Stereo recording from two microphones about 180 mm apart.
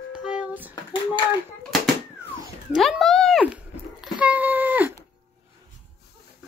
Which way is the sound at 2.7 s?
Centre (ahead or behind).